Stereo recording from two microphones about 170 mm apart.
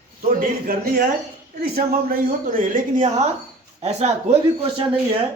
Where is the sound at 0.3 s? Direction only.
55° right (ahead or behind).